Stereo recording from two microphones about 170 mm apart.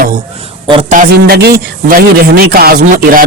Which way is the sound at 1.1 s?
70° right (ahead or behind).